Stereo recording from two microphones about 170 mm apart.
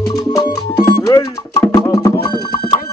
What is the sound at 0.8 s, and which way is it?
Music, 20° left (ahead or behind).